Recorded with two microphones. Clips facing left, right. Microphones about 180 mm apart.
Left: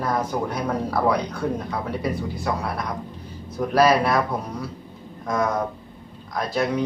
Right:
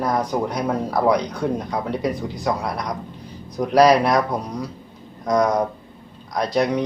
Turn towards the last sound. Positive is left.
turn(degrees=-15)  # may be behind; listen again after turning